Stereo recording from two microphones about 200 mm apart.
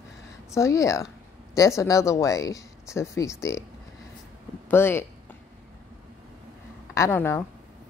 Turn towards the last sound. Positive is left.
turn(degrees=10)  # may be behind; listen again after turning